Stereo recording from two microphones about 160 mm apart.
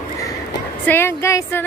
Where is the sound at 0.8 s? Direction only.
15° left (ahead or behind).